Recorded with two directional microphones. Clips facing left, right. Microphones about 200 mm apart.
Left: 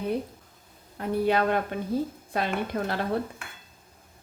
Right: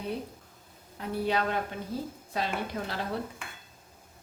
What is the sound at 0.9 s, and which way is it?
A woman's voice, 55° left (ahead or behind).